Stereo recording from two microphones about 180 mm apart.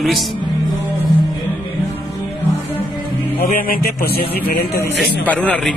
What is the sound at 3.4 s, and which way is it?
A man's voice, 55° left (ahead or behind).